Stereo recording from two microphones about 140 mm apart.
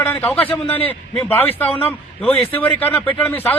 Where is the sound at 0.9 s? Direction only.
15° left (ahead or behind).